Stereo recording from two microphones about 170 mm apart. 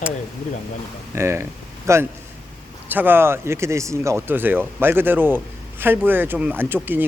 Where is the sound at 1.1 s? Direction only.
15° right (ahead or behind).